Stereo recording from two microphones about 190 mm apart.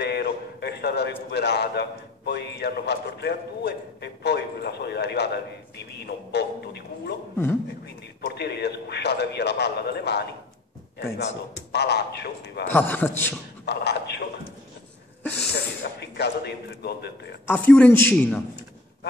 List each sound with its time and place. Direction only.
0.0 s a man's voice: 60° left (ahead or behind)
12.7 s a man's voice: 10° left (ahead or behind)
13.7 s a man's voice: 60° left (ahead or behind)
15.3 s a man's voice: 60° left (ahead or behind)
17.5 s a man's voice: 10° left (ahead or behind)